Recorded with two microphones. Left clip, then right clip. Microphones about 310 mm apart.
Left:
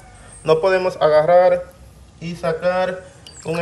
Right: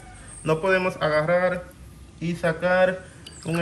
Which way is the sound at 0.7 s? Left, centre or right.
Left.